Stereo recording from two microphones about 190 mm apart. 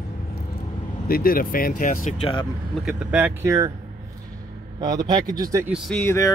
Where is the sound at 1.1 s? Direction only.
50° left (ahead or behind).